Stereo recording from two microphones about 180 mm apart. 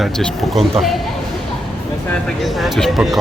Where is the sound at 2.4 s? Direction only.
Centre (ahead or behind).